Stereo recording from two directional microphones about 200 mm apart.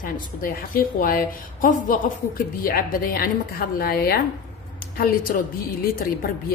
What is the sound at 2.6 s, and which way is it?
A woman's voice, 50° left (ahead or behind).